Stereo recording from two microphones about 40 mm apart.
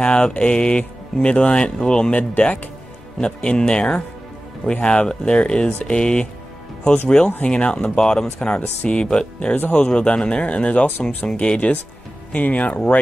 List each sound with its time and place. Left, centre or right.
0.0 s speech: left
2.1 s speech: left
3.2 s speech: left
9.0 s speech: centre
9.6 s speech: left
9.8 s speech: left
10.9 s speech: left
11.3 s speech: left
12.3 s speech: left